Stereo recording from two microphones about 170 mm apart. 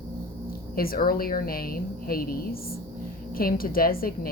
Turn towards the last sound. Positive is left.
turn(degrees=60)  # may be behind; listen again after turning